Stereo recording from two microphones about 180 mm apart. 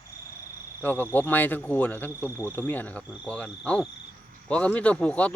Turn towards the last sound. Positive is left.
turn(degrees=5)  # may be behind; listen again after turning